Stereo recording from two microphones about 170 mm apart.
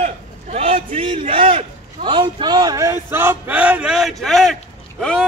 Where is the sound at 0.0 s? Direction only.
40° right (ahead or behind).